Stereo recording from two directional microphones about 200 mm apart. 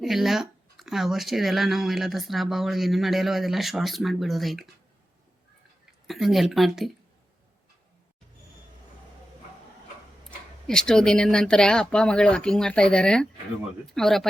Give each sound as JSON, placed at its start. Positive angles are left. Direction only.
{"t": 0.0, "sound": "speech", "side_deg": 0}
{"t": 6.1, "sound": "speech", "side_deg": 0}
{"t": 10.7, "sound": "speech", "side_deg": 5}